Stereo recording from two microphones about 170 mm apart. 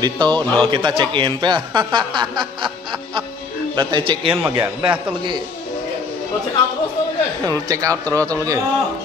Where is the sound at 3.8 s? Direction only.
30° right (ahead or behind).